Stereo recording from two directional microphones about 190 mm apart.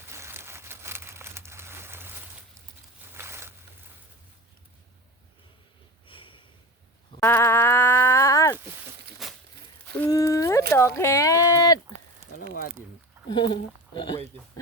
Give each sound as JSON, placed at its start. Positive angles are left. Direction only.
{"t": 0.0, "sound": "crumpling", "side_deg": -15}
{"t": 3.2, "sound": "a sound", "side_deg": -15}
{"t": 6.1, "sound": "snort", "side_deg": 25}
{"t": 7.2, "sound": "livestock", "side_deg": 15}
{"t": 9.2, "sound": "a sound", "side_deg": 0}
{"t": 10.1, "sound": "speech", "side_deg": 15}
{"t": 13.2, "sound": "speech", "side_deg": 25}